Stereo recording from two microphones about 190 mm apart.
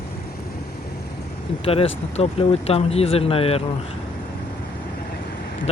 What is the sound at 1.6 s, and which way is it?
Speech, 30° left (ahead or behind).